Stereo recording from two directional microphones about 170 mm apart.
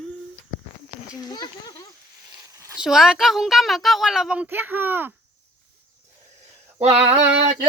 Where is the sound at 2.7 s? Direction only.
5° right (ahead or behind).